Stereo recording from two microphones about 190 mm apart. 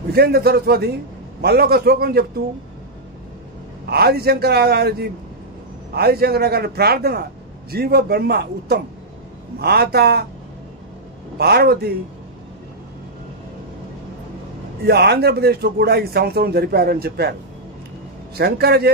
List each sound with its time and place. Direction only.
0.1 s speech: 55° right (ahead or behind)
3.9 s speech: 55° right (ahead or behind)
11.3 s speech: 55° right (ahead or behind)
14.9 s speech: 60° right (ahead or behind)